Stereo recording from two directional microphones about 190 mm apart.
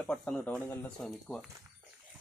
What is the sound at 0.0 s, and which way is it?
Speech, 5° left (ahead or behind).